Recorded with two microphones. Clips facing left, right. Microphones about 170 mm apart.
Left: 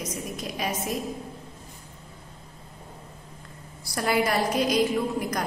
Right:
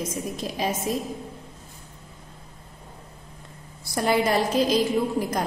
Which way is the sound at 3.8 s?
20° right (ahead or behind).